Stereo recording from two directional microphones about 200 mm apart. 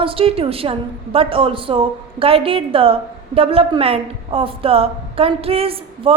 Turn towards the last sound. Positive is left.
turn(degrees=-30)  # may be behind; listen again after turning